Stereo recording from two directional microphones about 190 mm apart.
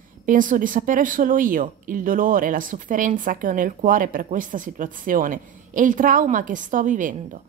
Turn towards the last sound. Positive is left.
turn(degrees=-40)  # may be behind; listen again after turning